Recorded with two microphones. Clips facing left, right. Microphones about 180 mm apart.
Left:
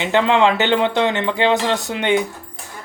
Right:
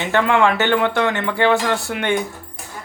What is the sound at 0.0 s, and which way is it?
Speech, 20° left (ahead or behind).